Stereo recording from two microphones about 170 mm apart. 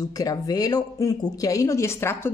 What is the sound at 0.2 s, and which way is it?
Speech, 20° left (ahead or behind).